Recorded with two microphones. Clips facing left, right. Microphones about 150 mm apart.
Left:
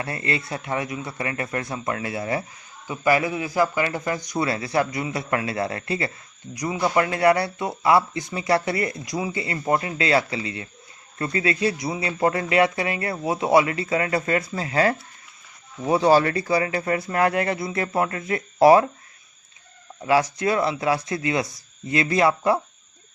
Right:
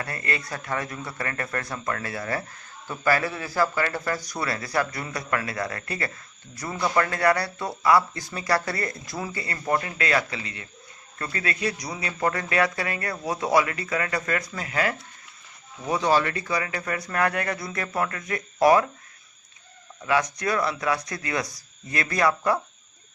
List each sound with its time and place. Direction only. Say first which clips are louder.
0.0 s speech: left 3 dB; 25° left (ahead or behind)
20.0 s speech: left 4 dB; 30° left (ahead or behind)